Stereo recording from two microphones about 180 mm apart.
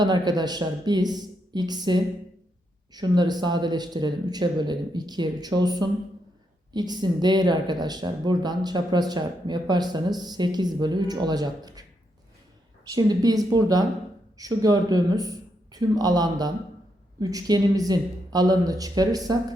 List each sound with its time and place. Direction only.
0.0 s speech: 25° right (ahead or behind)
12.9 s speech: 20° right (ahead or behind)